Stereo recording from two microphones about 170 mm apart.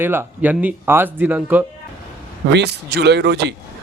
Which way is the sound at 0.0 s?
10° right (ahead or behind).